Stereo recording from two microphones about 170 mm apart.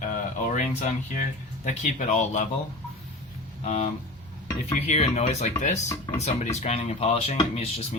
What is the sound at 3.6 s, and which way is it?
Speech, 40° left (ahead or behind).